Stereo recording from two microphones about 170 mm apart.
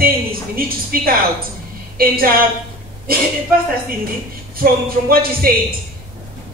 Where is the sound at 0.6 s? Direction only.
60° right (ahead or behind).